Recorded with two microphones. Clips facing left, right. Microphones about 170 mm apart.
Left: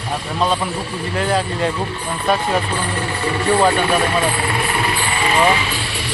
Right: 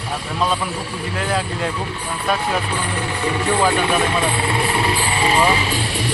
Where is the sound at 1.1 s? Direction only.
Centre (ahead or behind).